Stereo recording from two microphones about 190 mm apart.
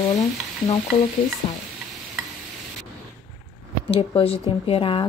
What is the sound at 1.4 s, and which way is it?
Speech, 30° left (ahead or behind).